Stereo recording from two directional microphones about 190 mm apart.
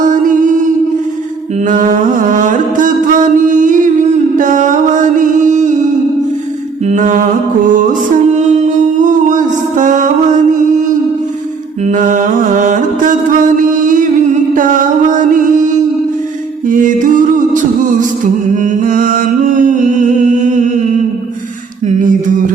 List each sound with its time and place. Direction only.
0.0 s mantra: 45° right (ahead or behind)
1.6 s music: 45° right (ahead or behind)
6.8 s mantra: 40° right (ahead or behind)
7.7 s music: 45° right (ahead or behind)
11.9 s music: 40° right (ahead or behind)
21.8 s a sound: 45° right (ahead or behind)